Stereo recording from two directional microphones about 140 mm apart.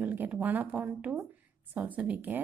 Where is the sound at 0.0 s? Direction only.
10° right (ahead or behind).